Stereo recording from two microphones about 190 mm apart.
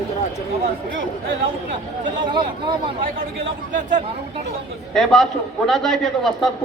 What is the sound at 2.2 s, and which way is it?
Speech, 25° right (ahead or behind).